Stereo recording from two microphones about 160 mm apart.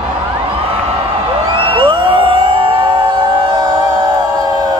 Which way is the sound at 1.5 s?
35° right (ahead or behind).